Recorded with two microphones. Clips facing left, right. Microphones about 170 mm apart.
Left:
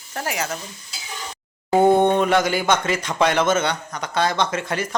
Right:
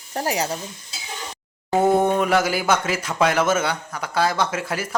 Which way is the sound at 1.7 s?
Centre (ahead or behind).